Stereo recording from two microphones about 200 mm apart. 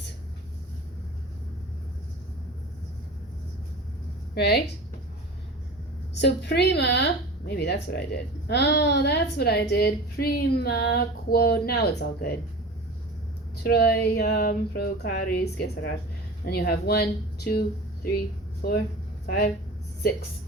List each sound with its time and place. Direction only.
4.4 s speech: 55° left (ahead or behind)
6.1 s a woman's voice: 60° left (ahead or behind)
13.6 s speech: 50° left (ahead or behind)